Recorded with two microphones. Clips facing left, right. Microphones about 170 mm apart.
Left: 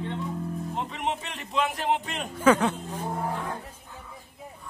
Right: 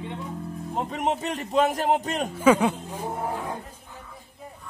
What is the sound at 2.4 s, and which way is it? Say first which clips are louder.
Speech: right 1 dB; 10° right (ahead or behind).